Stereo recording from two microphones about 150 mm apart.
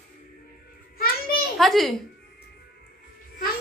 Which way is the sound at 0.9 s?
80° left.